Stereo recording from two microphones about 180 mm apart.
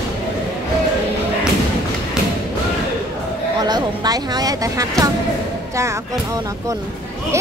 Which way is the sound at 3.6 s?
20° right (ahead or behind).